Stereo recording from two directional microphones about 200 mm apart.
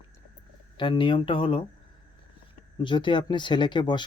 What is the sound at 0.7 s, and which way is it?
Speech, 25° left (ahead or behind).